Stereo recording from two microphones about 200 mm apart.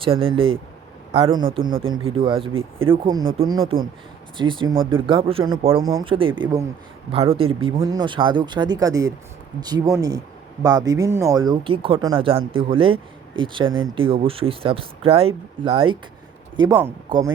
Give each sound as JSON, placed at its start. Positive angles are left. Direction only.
{"t": 0.0, "sound": "speech", "side_deg": -25}
{"t": 4.4, "sound": "speech", "side_deg": -25}
{"t": 16.6, "sound": "speech", "side_deg": -15}